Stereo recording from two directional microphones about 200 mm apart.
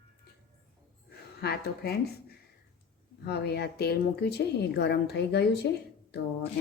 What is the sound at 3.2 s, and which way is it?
Speech, 55° left (ahead or behind).